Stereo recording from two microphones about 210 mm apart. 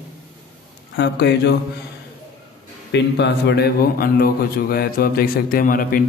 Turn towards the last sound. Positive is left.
turn(degrees=45)  # may be behind; listen again after turning